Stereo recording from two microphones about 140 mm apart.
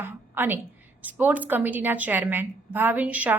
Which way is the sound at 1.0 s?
10° right (ahead or behind).